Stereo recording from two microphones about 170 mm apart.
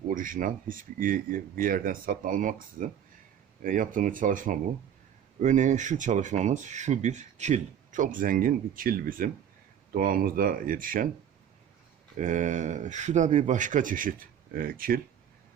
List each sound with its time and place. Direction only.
0.1 s speech: 50° right (ahead or behind)
12.1 s speech: 45° right (ahead or behind)